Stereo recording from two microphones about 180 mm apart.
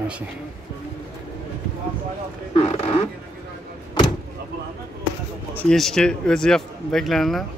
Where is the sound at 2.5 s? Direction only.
30° left (ahead or behind).